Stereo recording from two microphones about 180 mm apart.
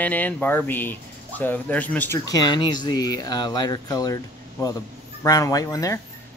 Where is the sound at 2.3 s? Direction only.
20° left (ahead or behind).